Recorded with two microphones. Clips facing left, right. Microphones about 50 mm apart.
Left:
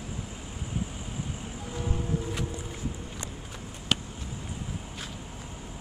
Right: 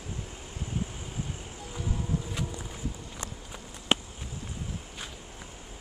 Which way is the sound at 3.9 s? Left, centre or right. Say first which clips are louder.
Right 2 dB; right.